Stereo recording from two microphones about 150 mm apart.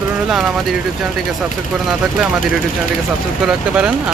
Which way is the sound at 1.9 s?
Centre (ahead or behind).